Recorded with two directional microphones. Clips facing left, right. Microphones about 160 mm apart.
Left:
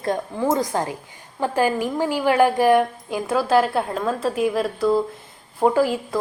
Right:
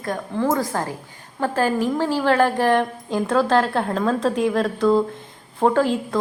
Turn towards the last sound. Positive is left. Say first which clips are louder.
# even
turn(degrees=5)  # may be behind; listen again after turning